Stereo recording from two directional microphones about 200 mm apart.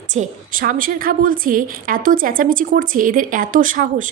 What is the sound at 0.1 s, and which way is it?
A woman's voice, 40° right (ahead or behind).